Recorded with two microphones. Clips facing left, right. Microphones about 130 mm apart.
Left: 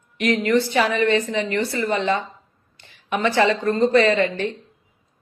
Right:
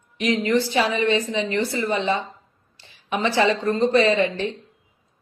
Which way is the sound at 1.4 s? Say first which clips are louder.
Even; 15° right (ahead or behind).